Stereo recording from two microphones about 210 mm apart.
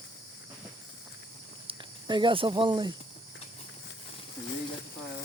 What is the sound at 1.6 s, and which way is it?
Speech, 25° right (ahead or behind).